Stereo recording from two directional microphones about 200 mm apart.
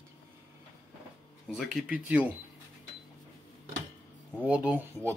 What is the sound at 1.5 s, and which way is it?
Speech, centre (ahead or behind).